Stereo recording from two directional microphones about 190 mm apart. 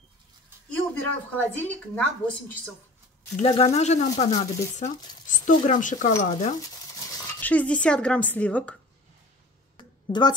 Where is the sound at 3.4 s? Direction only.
30° left (ahead or behind).